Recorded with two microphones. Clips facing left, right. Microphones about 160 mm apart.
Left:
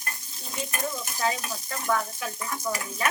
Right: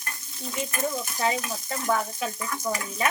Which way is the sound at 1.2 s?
20° right (ahead or behind).